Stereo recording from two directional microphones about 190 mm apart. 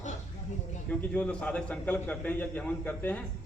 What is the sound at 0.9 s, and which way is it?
A man's voice, 5° left (ahead or behind).